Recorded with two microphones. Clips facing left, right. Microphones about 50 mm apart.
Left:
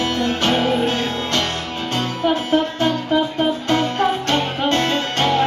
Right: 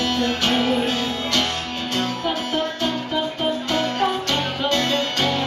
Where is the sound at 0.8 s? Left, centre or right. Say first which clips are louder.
Left 3 dB; left.